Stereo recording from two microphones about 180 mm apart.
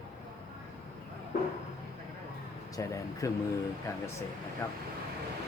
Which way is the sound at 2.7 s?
20° left (ahead or behind).